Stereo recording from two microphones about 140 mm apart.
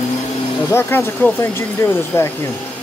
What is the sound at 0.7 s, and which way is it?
Speech, 15° left (ahead or behind).